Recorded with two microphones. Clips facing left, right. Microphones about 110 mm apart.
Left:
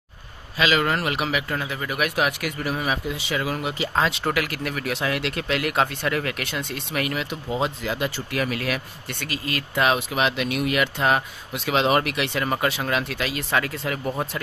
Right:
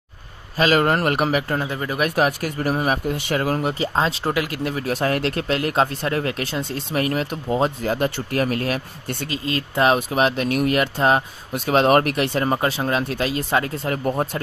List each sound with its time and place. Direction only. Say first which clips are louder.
0.6 s speech: right 4 dB; 45° right (ahead or behind); by 4.9 s 25° right (ahead or behind)
4.9 s speech: right 6 dB; 40° right (ahead or behind)
11.5 s speech: right 5 dB; 45° right (ahead or behind); by 13.9 s 30° right (ahead or behind)